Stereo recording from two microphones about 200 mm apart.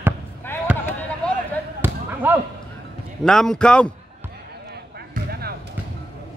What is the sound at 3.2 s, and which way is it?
Speech, centre (ahead or behind).